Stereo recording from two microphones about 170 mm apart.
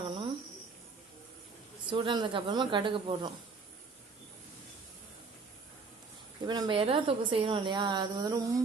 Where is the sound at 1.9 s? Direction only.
25° right (ahead or behind).